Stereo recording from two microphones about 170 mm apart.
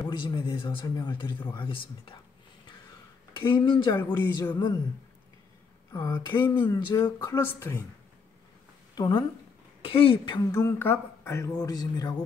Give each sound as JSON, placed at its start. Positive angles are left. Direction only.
{"t": 0.0, "sound": "speech", "side_deg": 25}
{"t": 3.3, "sound": "speech", "side_deg": 30}
{"t": 5.9, "sound": "speech", "side_deg": 25}
{"t": 8.9, "sound": "speech", "side_deg": 25}